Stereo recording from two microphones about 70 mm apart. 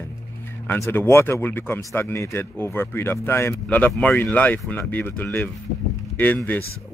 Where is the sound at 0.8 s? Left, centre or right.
Left.